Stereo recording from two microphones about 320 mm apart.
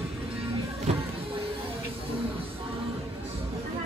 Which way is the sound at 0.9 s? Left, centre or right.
Centre.